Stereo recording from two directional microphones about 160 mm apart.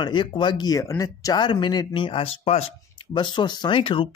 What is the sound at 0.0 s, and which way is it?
Speech, 30° left (ahead or behind).